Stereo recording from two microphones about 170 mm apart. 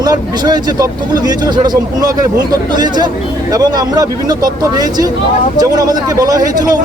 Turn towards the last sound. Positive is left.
turn(degrees=-20)  # may be behind; listen again after turning